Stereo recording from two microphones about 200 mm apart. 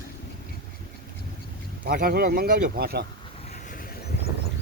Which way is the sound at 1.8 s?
45° right (ahead or behind).